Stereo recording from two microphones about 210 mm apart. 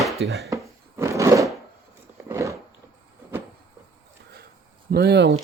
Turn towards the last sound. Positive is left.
turn(degrees=-55)  # may be behind; listen again after turning